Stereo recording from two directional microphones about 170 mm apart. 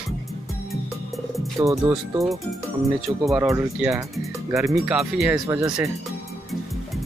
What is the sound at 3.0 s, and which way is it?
Speech, centre (ahead or behind).